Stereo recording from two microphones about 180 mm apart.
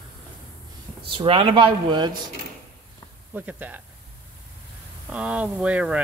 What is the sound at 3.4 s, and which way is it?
Speech, 10° right (ahead or behind).